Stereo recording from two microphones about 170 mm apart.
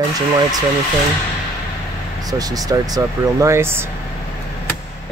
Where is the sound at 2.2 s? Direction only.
20° right (ahead or behind).